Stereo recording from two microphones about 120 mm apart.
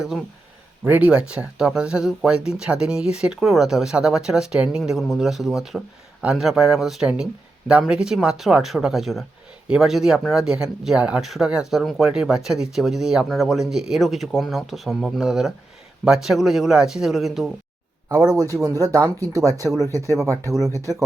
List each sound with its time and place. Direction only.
0.9 s speech: 10° right (ahead or behind)
18.8 s speech: 30° right (ahead or behind)